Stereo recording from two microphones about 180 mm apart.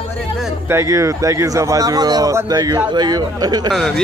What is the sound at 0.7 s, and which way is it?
Speech, 15° right (ahead or behind).